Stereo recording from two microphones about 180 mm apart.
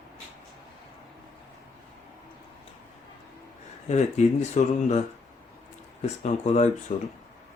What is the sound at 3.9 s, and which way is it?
Speech, 40° left (ahead or behind).